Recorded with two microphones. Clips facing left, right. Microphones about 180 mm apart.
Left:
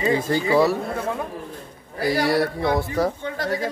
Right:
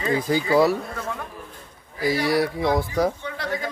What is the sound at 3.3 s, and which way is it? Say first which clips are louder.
Speech: left 3 dB; 40° left (ahead or behind).